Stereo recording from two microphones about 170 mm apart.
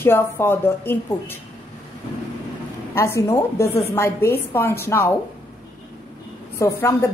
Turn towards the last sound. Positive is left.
turn(degrees=15)  # may be behind; listen again after turning